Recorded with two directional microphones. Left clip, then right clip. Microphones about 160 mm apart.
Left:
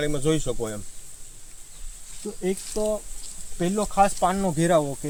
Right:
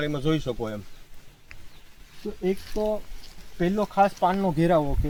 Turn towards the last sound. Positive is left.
turn(degrees=5)  # may be behind; listen again after turning